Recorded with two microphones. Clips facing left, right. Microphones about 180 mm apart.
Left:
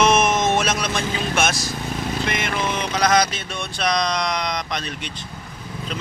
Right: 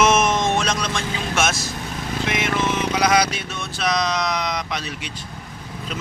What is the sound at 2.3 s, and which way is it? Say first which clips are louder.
Speech: right 6 dB; centre (ahead or behind).